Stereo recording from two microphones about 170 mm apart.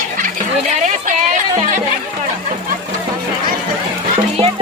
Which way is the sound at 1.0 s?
50° right (ahead or behind).